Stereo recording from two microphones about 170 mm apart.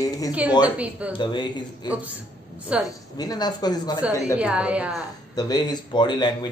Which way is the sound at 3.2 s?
25° left (ahead or behind).